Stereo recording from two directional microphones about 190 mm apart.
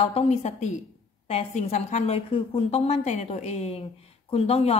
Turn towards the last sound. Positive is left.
turn(degrees=30)  # may be behind; listen again after turning